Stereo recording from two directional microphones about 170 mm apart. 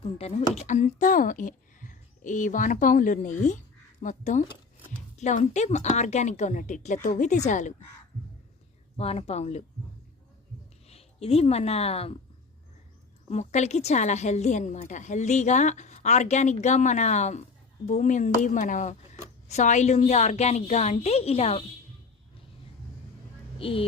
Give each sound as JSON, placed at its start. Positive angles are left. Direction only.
{"t": 0.0, "sound": "a woman's voice", "side_deg": 35}
{"t": 9.0, "sound": "a woman's voice", "side_deg": 35}
{"t": 10.8, "sound": "speech", "side_deg": 35}
{"t": 13.3, "sound": "a woman's voice", "side_deg": 40}
{"t": 23.6, "sound": "speech", "side_deg": 35}